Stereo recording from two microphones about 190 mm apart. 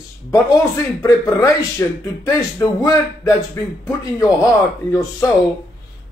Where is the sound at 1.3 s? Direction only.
15° left (ahead or behind).